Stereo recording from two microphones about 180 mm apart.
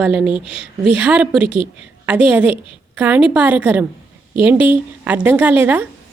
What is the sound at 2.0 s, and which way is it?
Speech, 5° right (ahead or behind).